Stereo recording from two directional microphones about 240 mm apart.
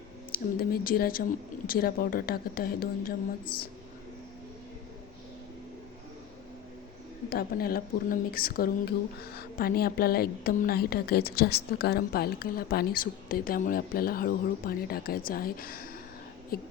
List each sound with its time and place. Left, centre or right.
0.3 s a woman's voice: left
7.3 s a woman's voice: left